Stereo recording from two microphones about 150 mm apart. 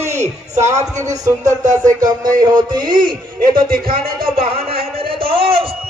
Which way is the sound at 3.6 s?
80° right.